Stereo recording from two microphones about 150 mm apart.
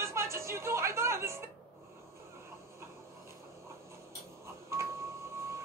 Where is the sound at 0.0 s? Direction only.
20° right (ahead or behind).